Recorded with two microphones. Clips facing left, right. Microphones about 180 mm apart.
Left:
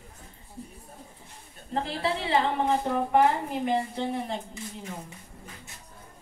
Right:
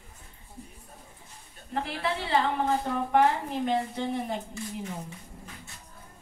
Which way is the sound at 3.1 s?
5° left (ahead or behind).